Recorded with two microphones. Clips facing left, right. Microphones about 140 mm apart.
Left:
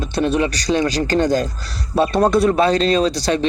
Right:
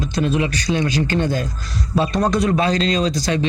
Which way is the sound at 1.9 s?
60° left (ahead or behind).